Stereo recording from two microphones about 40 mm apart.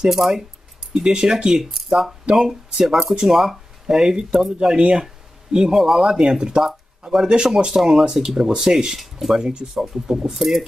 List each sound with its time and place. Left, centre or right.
0.1 s speech: centre
0.9 s speech: centre
1.8 s speech: centre
8.9 s speech: centre
9.4 s speech: centre